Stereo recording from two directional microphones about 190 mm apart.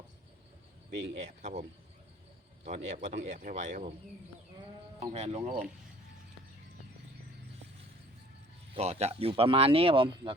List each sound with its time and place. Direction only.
0.9 s speech: 35° right (ahead or behind)
2.6 s speech: 40° right (ahead or behind)
4.9 s speech: 35° right (ahead or behind)
8.7 s speech: 35° right (ahead or behind)